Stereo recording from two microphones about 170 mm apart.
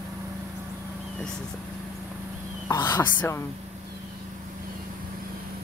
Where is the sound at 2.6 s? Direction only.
20° left (ahead or behind).